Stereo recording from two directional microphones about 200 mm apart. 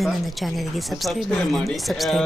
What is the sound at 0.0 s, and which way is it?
Speech, centre (ahead or behind).